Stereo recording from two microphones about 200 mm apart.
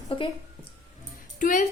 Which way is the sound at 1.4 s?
40° left (ahead or behind).